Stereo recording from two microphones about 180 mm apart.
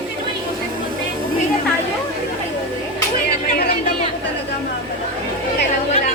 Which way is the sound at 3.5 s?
60° left (ahead or behind).